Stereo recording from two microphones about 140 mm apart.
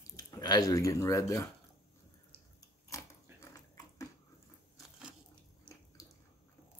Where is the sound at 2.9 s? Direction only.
25° left (ahead or behind).